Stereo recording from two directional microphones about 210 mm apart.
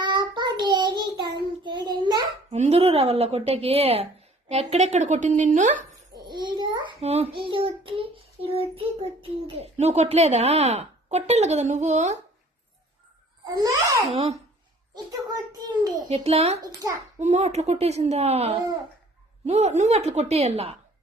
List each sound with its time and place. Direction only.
0.0 s child singing: 20° right (ahead or behind)
2.6 s a child's voice: 30° right (ahead or behind)
6.1 s child singing: 20° right (ahead or behind)
8.4 s a child's voice: 25° right (ahead or behind)
13.4 s a child's voice: 20° right (ahead or behind)
14.1 s child singing: 30° right (ahead or behind)
14.9 s a child's voice: 15° right (ahead or behind)
16.0 s child singing: 30° right (ahead or behind)
17.2 s a child's voice: 35° right (ahead or behind)